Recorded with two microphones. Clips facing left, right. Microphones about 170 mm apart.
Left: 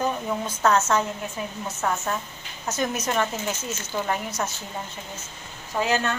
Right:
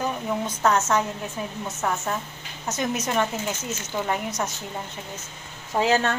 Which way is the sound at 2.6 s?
20° right (ahead or behind).